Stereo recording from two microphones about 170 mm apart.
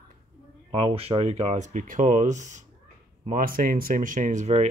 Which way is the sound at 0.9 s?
35° right (ahead or behind).